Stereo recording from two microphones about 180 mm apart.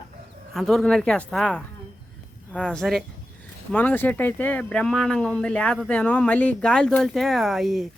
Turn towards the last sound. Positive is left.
turn(degrees=0)  # may be behind; listen again after turning